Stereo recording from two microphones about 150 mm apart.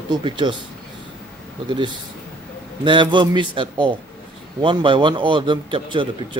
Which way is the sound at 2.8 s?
30° right (ahead or behind).